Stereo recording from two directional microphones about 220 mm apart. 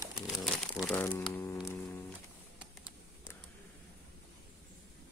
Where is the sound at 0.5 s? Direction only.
Centre (ahead or behind).